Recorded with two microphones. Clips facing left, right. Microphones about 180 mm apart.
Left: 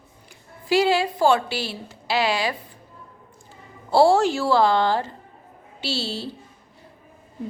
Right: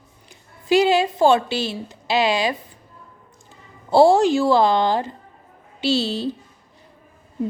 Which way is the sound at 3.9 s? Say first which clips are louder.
Right 3 dB; 20° right (ahead or behind).